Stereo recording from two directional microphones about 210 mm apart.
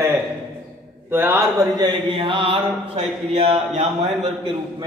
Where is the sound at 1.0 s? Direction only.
10° right (ahead or behind); by 4.3 s 30° right (ahead or behind).